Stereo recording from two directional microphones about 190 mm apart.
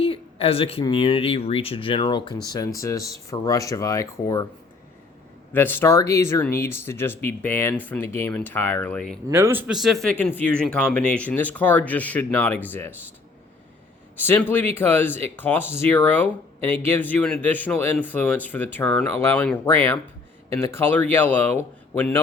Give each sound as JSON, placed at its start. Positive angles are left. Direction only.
{"t": 0.0, "sound": "speech", "side_deg": 30}
{"t": 5.5, "sound": "speech", "side_deg": 10}
{"t": 9.3, "sound": "speech", "side_deg": -10}
{"t": 14.2, "sound": "speech", "side_deg": 10}